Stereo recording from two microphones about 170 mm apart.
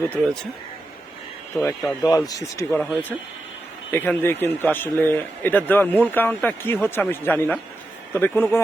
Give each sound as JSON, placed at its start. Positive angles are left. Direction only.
{"t": 0.2, "sound": "speech", "side_deg": 0}
{"t": 1.5, "sound": "speech", "side_deg": 10}
{"t": 2.0, "sound": "speech", "side_deg": 20}
{"t": 3.9, "sound": "speech", "side_deg": 10}